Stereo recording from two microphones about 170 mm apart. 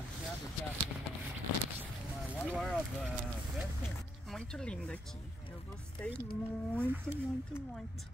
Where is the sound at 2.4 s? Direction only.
Centre (ahead or behind).